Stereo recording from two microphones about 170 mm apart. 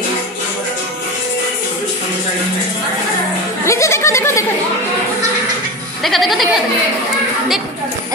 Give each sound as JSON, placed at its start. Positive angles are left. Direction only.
{"t": 3.6, "sound": "goat", "side_deg": 15}
{"t": 6.0, "sound": "speech", "side_deg": 0}